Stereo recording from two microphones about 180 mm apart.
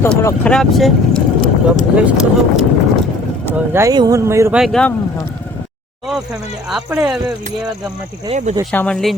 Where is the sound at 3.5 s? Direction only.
15° right (ahead or behind).